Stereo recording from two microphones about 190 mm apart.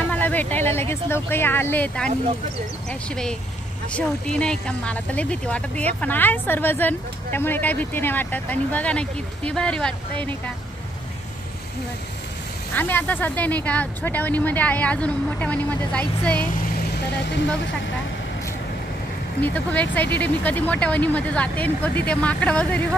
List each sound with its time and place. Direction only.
0.1 s speech: 10° left (ahead or behind)
12.7 s speech: 10° left (ahead or behind)
19.4 s speech: 10° left (ahead or behind)